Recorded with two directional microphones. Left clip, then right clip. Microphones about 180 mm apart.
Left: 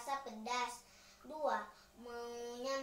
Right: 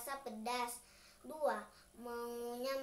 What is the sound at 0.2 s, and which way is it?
Child singing, 30° right (ahead or behind).